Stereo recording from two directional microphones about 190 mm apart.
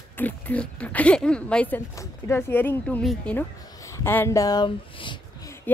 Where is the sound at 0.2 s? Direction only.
10° left (ahead or behind); by 5.1 s 25° left (ahead or behind).